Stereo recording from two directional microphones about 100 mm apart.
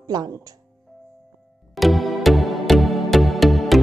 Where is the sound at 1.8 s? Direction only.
Centre (ahead or behind).